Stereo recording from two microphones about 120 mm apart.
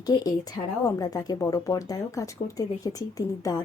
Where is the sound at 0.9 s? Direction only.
30° left (ahead or behind).